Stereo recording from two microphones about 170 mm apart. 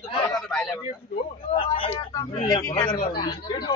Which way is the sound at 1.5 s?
30° left (ahead or behind).